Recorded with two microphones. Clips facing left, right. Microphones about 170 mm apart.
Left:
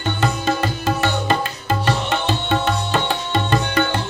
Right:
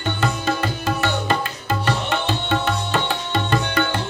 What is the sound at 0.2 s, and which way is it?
Music, 20° left (ahead or behind).